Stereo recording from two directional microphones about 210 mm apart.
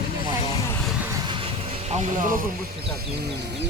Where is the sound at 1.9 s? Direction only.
30° right (ahead or behind).